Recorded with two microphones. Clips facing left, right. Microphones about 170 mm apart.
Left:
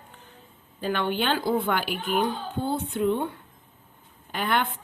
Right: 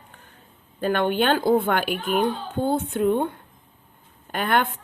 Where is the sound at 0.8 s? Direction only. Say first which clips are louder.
Right 5 dB; 55° right (ahead or behind).